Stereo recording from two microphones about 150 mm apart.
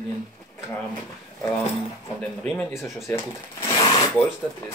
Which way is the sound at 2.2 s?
10° left (ahead or behind).